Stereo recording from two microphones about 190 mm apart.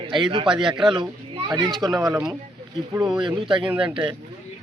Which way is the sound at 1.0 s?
20° right (ahead or behind).